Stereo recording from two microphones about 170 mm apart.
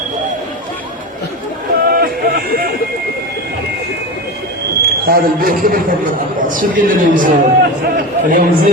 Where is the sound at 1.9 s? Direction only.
60° right (ahead or behind).